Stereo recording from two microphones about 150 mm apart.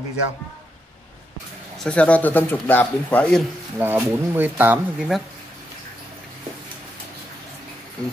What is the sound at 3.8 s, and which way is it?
Speech, 15° right (ahead or behind).